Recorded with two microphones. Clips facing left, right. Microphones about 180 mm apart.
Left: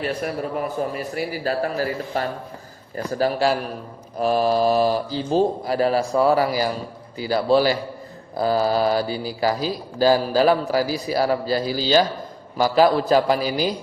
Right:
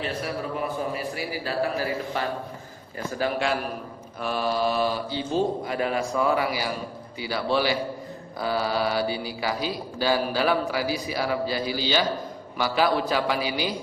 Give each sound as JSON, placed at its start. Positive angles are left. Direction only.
{"t": 0.8, "sound": "a man's voice", "side_deg": 45}